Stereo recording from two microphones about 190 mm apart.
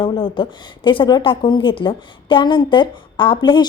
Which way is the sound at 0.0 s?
25° left (ahead or behind).